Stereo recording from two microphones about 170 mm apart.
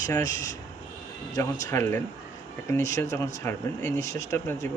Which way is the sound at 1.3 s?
15° left (ahead or behind).